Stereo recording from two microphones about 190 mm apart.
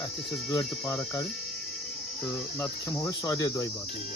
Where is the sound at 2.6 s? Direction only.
15° left (ahead or behind).